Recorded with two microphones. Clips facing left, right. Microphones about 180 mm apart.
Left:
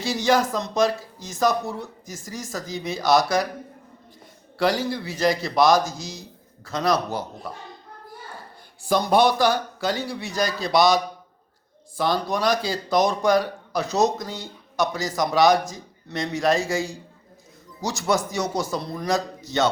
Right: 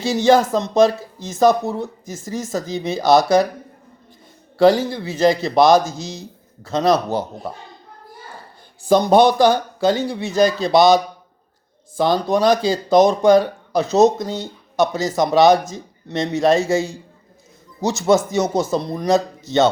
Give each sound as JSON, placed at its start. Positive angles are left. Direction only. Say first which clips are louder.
{"t": 0.0, "sound": "speech", "louder": "right 6 dB", "side_deg": -25}
{"t": 4.5, "sound": "speech", "louder": "right 8 dB", "side_deg": -25}
{"t": 8.9, "sound": "speech", "louder": "right 6 dB", "side_deg": -25}